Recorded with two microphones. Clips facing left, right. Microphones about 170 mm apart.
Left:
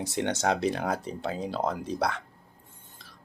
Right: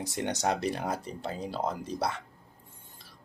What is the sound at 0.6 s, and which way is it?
Speech, 5° right (ahead or behind).